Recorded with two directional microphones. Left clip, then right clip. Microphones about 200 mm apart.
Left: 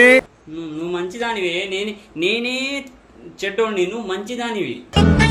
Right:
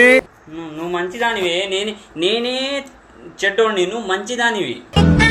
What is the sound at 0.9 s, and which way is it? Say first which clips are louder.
Speech: right 5 dB; 40° left (ahead or behind).